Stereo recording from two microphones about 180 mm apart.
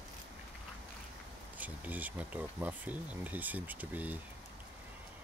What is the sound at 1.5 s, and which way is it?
Speech, 10° right (ahead or behind).